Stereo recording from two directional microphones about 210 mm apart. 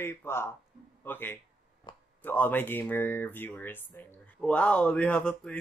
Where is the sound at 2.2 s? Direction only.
10° left (ahead or behind).